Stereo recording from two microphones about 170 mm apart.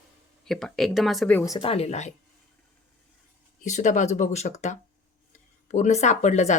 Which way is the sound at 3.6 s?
45° left (ahead or behind).